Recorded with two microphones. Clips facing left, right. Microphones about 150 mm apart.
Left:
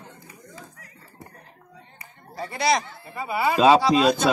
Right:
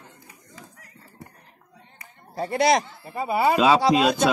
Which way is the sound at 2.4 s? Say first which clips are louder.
Right 3 dB; 55° right (ahead or behind).